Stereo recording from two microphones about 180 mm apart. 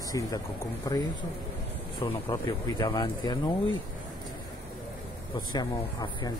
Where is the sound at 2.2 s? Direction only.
25° left (ahead or behind).